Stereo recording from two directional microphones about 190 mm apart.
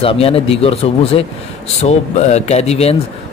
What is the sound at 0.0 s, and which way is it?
Speech, 30° left (ahead or behind).